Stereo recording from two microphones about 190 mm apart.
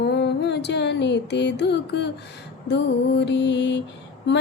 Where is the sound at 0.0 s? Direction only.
65° left (ahead or behind).